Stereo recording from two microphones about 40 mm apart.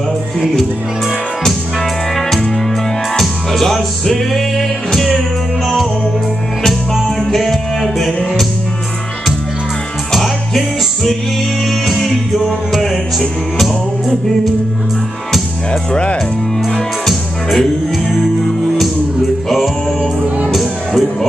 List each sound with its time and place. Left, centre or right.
3.2 s music: centre
6.6 s music: centre
10.1 s music: centre
11.6 s music: centre
15.9 s speech: left
16.7 s music: centre
20.4 s music: centre